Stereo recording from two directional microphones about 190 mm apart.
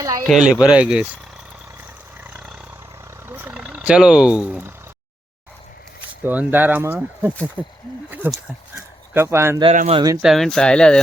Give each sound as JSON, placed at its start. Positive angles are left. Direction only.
{"t": 0.3, "sound": "speech", "side_deg": 0}
{"t": 2.2, "sound": "vehicle", "side_deg": -10}
{"t": 6.2, "sound": "speech", "side_deg": -10}
{"t": 9.7, "sound": "speech", "side_deg": -35}
{"t": 10.0, "sound": "speech", "side_deg": -20}
{"t": 10.2, "sound": "speech", "side_deg": 0}